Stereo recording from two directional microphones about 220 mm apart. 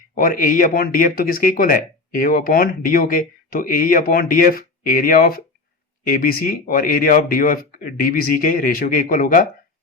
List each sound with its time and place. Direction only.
0.1 s speech: 40° left (ahead or behind)